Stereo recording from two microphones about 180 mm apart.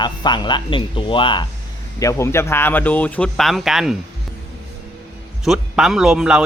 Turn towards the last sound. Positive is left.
turn(degrees=-5)  # may be behind; listen again after turning